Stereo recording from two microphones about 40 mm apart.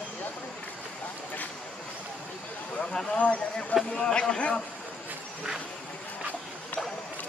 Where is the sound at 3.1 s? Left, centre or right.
Left.